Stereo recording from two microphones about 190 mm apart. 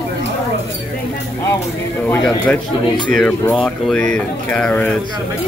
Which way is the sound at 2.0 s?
5° left (ahead or behind).